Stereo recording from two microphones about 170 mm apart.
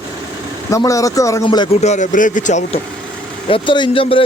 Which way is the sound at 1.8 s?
45° left (ahead or behind).